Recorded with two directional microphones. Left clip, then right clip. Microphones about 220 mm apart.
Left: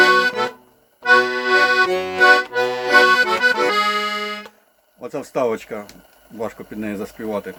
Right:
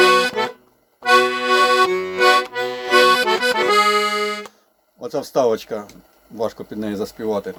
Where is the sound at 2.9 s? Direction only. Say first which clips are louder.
Even; centre (ahead or behind).